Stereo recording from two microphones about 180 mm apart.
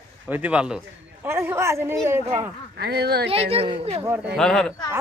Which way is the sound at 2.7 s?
60° right (ahead or behind).